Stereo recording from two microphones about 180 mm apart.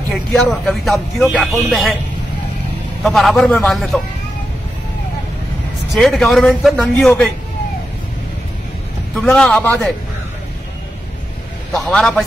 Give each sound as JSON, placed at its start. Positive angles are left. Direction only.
{"t": 0.1, "sound": "a man's voice", "side_deg": 5}
{"t": 3.0, "sound": "a man's voice", "side_deg": 0}
{"t": 5.9, "sound": "a man's voice", "side_deg": 0}
{"t": 9.1, "sound": "a man's voice", "side_deg": 5}
{"t": 11.7, "sound": "a man's voice", "side_deg": 0}